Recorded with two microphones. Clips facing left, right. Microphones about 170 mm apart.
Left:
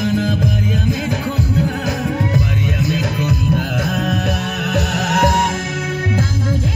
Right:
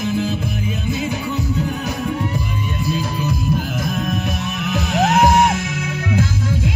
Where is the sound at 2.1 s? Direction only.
90° left; by 5.6 s 60° left (ahead or behind).